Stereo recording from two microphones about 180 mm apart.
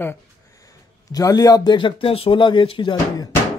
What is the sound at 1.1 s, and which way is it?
Speech, 20° left (ahead or behind).